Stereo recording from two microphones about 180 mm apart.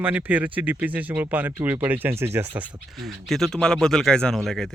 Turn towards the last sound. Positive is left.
turn(degrees=0)  # may be behind; listen again after turning